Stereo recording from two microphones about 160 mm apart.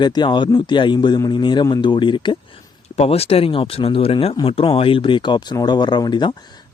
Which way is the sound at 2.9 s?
40° left (ahead or behind).